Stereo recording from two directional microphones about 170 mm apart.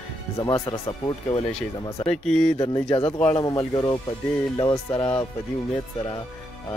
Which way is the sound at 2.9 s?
35° left (ahead or behind).